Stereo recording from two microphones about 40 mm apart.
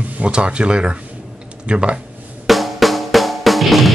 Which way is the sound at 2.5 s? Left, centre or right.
Centre.